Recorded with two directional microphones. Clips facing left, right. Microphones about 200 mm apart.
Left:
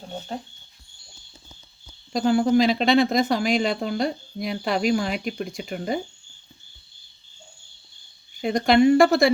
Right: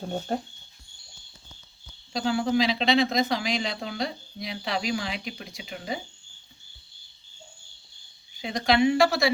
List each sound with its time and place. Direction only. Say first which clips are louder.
2.1 s speech: left 6 dB; 50° left (ahead or behind)
8.4 s speech: left 5 dB; 50° left (ahead or behind)